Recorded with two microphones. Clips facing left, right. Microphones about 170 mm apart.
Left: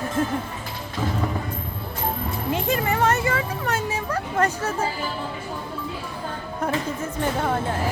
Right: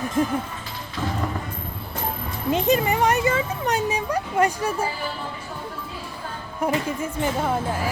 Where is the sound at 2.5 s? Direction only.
20° right (ahead or behind).